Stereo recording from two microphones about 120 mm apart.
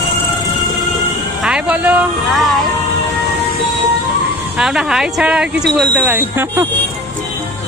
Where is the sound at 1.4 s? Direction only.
10° right (ahead or behind).